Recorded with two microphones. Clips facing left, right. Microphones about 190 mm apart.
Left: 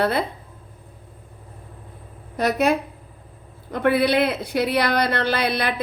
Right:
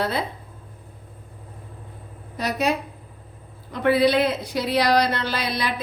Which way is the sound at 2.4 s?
55° left (ahead or behind).